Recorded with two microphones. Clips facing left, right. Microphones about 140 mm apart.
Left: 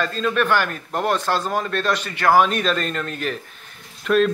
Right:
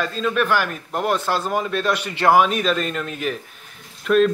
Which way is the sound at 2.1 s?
25° right (ahead or behind).